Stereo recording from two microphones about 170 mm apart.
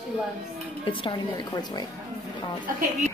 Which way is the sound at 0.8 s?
30° left (ahead or behind).